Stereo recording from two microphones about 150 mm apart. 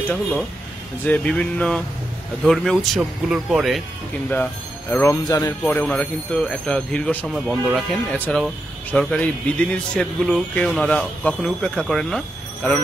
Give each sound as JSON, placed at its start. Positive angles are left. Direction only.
{"t": 0.1, "sound": "speech", "side_deg": 5}
{"t": 5.0, "sound": "speech", "side_deg": 20}
{"t": 5.6, "sound": "speech", "side_deg": 10}